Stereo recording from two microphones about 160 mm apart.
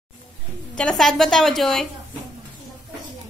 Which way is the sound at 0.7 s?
5° left (ahead or behind).